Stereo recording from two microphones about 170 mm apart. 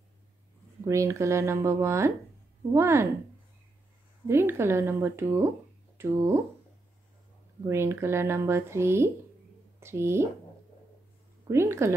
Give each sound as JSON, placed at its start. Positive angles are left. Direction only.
{"t": 0.8, "sound": "speech", "side_deg": -15}
{"t": 4.3, "sound": "speech", "side_deg": -15}
{"t": 7.6, "sound": "speech", "side_deg": -15}
{"t": 11.4, "sound": "speech", "side_deg": -15}